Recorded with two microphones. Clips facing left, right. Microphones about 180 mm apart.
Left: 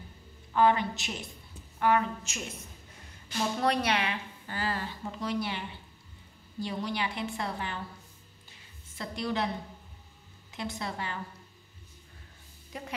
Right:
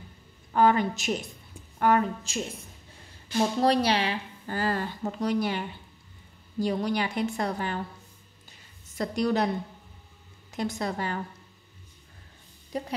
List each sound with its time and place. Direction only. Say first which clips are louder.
0.5 s a woman's voice: right 3 dB; 45° right (ahead or behind)
8.9 s a woman's voice: right 7 dB; 45° right (ahead or behind)
10.5 s a woman's voice: right 6 dB; 45° right (ahead or behind)
12.7 s a woman's voice: right 9 dB; 35° right (ahead or behind)